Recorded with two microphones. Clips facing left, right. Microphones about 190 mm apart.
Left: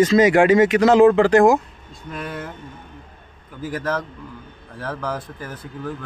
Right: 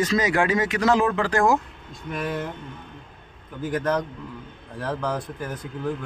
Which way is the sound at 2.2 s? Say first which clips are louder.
Right 3 dB; centre (ahead or behind).